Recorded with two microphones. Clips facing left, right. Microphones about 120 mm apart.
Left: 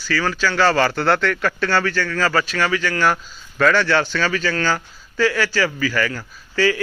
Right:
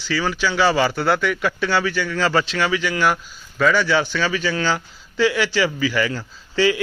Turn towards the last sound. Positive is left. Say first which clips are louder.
# right 1 dB
turn(degrees=-20)  # may be behind; listen again after turning